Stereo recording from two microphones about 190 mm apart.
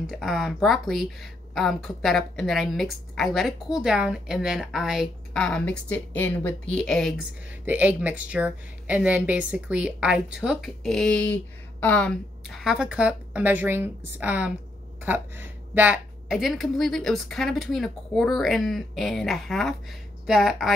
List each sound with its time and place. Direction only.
0.0 s a woman's voice: centre (ahead or behind)